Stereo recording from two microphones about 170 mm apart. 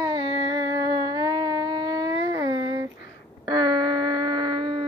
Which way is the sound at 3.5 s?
25° right (ahead or behind).